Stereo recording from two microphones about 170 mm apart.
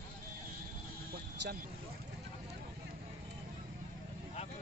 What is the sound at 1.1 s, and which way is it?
Vehicle, 65° right (ahead or behind).